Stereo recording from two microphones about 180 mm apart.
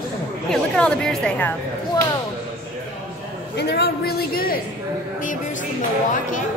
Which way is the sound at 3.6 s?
65° left (ahead or behind).